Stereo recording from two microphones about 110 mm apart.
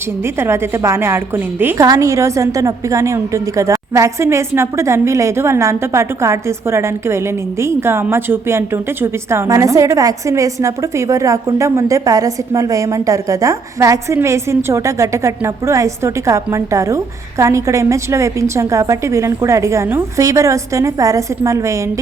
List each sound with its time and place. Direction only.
0.3 s a woman's voice: 20° right (ahead or behind)
1.8 s a woman's voice: 30° right (ahead or behind)